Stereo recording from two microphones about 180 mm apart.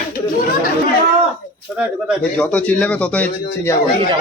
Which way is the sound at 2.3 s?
10° left (ahead or behind).